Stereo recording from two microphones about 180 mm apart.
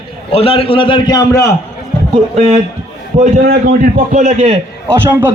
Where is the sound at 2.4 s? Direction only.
35° right (ahead or behind).